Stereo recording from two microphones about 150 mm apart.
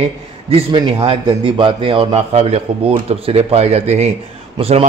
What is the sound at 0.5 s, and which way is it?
A man's voice, 35° right (ahead or behind).